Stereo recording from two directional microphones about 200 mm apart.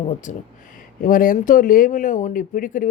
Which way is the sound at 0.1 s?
40° left (ahead or behind).